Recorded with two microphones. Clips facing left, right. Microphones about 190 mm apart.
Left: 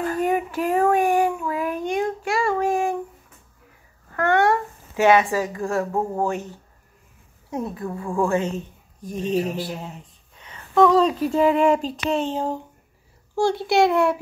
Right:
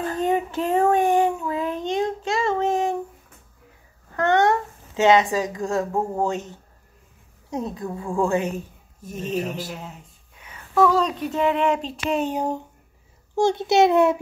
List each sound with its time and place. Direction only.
0.1 s child singing: 25° right (ahead or behind)
4.1 s a sound: 20° right (ahead or behind)
5.9 s a woman's voice: 15° right (ahead or behind)
7.5 s a woman's voice: 15° right (ahead or behind)